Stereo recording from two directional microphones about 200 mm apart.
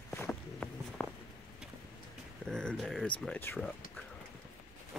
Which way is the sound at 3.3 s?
10° left (ahead or behind).